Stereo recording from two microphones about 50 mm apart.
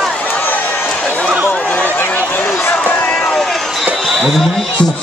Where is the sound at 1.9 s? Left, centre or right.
Left.